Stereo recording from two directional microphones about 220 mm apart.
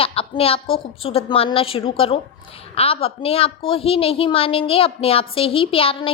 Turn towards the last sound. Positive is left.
turn(degrees=25)  # may be behind; listen again after turning